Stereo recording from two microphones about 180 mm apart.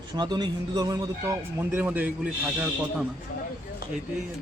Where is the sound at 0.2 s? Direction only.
25° right (ahead or behind); by 2.6 s 10° right (ahead or behind).